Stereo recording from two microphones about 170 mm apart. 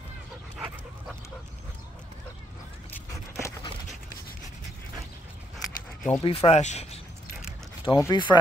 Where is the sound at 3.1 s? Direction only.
20° left (ahead or behind).